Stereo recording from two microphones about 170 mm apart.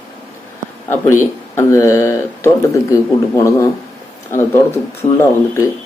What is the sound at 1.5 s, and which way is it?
Speech, 15° left (ahead or behind).